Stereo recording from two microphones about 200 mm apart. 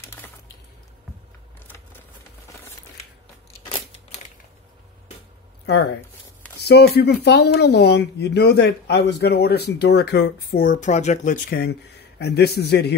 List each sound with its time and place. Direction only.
6.6 s speech: 55° left (ahead or behind); by 11.3 s 35° left (ahead or behind)
11.4 s speech: 50° left (ahead or behind)